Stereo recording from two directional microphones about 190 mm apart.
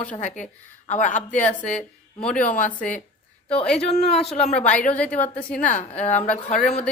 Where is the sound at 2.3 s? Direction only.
45° left (ahead or behind).